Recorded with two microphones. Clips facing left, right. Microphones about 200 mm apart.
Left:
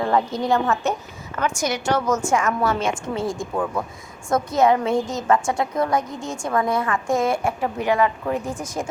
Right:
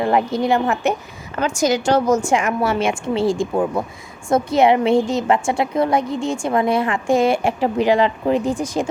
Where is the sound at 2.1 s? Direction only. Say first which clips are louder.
Right 3 dB; 15° right (ahead or behind).